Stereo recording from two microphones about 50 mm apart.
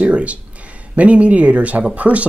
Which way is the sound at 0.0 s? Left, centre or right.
Right.